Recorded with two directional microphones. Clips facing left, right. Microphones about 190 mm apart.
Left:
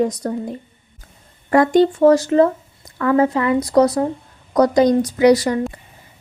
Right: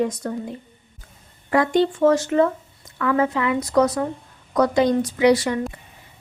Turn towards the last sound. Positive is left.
turn(degrees=40)  # may be behind; listen again after turning